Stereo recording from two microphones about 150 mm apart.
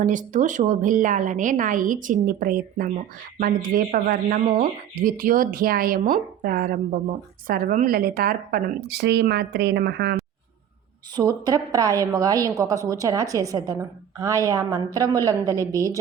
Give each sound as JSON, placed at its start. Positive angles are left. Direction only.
{"t": 0.0, "sound": "a woman's voice", "side_deg": -60}
{"t": 11.1, "sound": "a woman's voice", "side_deg": -25}